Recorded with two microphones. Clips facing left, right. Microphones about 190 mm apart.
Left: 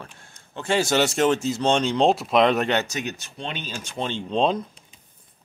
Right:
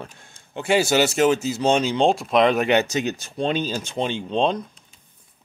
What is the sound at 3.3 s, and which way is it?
Speech, 40° right (ahead or behind).